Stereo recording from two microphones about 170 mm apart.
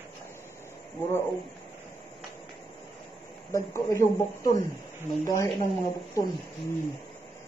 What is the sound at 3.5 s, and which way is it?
Speech, 15° left (ahead or behind).